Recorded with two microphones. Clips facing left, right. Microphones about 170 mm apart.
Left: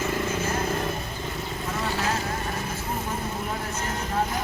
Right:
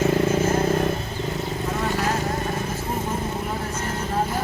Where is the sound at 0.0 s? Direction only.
50° right (ahead or behind).